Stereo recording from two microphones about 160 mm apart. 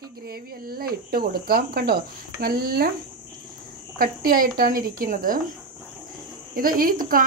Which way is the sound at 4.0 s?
65° right (ahead or behind).